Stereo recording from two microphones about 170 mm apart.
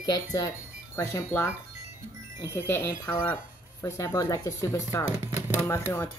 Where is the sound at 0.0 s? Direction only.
20° left (ahead or behind).